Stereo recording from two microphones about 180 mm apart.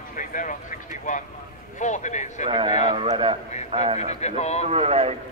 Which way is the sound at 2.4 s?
25° right (ahead or behind).